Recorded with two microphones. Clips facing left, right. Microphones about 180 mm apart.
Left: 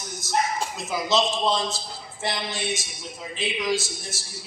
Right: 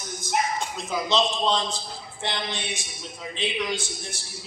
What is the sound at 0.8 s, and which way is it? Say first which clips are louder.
A man's voice: left 1 dB; 5° left (ahead or behind).